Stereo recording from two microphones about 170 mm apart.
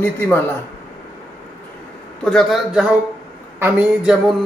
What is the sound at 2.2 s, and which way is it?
Speech, centre (ahead or behind).